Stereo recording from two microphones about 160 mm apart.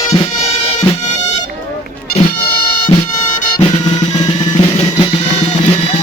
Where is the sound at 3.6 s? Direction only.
25° left (ahead or behind).